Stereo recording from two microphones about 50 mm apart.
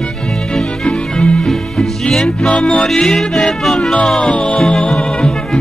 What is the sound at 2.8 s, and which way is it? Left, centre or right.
Music, centre.